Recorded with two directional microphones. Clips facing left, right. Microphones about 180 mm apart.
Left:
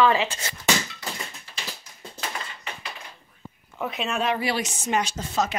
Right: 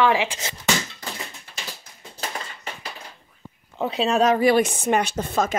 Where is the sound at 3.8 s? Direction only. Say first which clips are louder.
Right 7 dB; 30° right (ahead or behind); by 5.6 s 55° right (ahead or behind).